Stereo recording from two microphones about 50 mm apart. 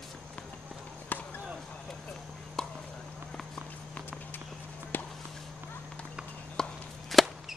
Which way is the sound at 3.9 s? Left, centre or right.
Left.